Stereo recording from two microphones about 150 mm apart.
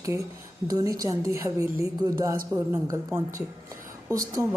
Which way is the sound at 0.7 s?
25° right (ahead or behind).